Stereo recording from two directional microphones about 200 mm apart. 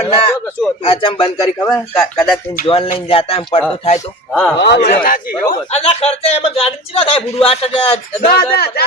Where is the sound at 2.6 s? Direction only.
25° left (ahead or behind).